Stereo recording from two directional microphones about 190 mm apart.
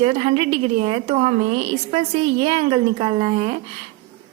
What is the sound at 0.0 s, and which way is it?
A woman's voice, 35° right (ahead or behind).